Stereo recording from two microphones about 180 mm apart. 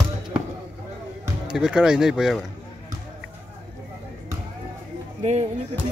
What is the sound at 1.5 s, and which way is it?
Speech, 5° right (ahead or behind).